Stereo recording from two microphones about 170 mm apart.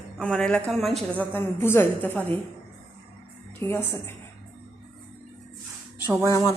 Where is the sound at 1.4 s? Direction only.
15° left (ahead or behind).